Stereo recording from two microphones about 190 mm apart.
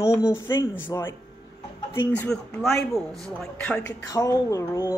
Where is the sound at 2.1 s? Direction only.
5° left (ahead or behind).